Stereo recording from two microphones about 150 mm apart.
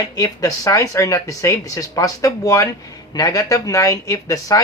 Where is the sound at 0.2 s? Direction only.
20° left (ahead or behind).